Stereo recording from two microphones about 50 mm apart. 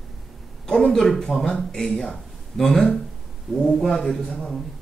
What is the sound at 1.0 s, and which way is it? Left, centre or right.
A man's voice, centre.